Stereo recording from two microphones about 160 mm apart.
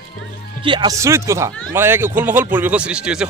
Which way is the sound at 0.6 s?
30° right (ahead or behind).